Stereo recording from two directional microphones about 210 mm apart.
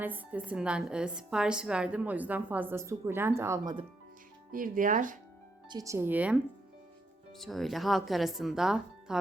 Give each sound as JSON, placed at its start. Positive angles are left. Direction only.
{"t": 0.0, "sound": "a woman's voice", "side_deg": -10}
{"t": 4.5, "sound": "speech", "side_deg": -40}
{"t": 5.6, "sound": "a woman's voice", "side_deg": -15}